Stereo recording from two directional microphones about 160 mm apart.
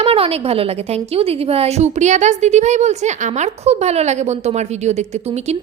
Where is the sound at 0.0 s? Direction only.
40° right (ahead or behind).